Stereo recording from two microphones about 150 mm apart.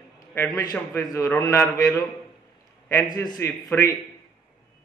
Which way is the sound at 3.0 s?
25° left (ahead or behind).